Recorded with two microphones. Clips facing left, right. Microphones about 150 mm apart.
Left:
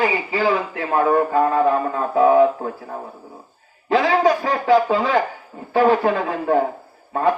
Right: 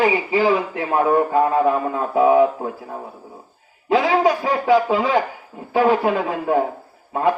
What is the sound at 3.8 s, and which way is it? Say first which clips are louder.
A man's voice: even; 10° right (ahead or behind).